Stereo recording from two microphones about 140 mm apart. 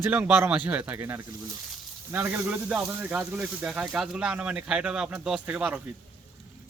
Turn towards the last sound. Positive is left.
turn(degrees=-10)  # may be behind; listen again after turning